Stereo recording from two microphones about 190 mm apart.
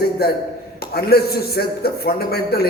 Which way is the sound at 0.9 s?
55° left (ahead or behind).